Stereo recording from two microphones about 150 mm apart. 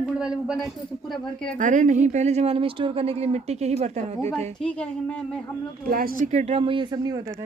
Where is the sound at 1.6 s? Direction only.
60° right (ahead or behind).